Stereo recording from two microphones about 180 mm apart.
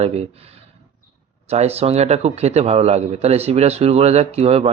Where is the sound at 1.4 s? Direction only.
35° right (ahead or behind).